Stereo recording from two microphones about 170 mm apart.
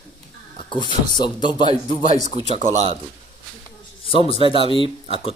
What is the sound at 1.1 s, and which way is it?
Speech, 25° left (ahead or behind).